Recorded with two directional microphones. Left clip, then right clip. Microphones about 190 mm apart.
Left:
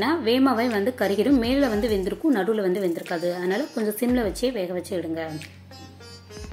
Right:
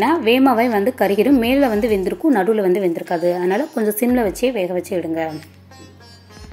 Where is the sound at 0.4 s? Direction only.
15° right (ahead or behind).